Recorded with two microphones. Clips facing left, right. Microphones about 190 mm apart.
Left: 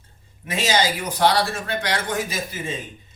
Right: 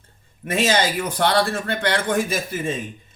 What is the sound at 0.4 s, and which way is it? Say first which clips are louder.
A man's voice: right 2 dB; 55° right (ahead or behind).